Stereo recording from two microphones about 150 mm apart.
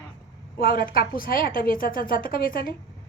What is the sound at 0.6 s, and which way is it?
A woman's voice, 80° left.